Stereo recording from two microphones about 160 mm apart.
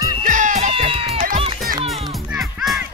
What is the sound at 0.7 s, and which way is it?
Music, 35° right (ahead or behind).